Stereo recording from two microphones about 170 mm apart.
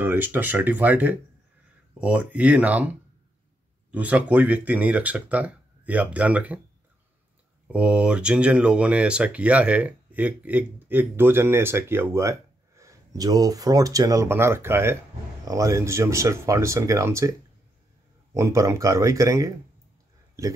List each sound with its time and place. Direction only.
0.0 s speech: 10° right (ahead or behind)
7.6 s speech: 5° right (ahead or behind)